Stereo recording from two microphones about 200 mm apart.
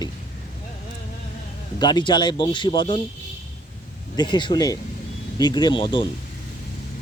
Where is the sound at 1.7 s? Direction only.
20° left (ahead or behind).